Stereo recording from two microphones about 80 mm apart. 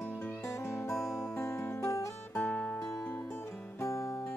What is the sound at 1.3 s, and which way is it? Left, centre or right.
Music, left.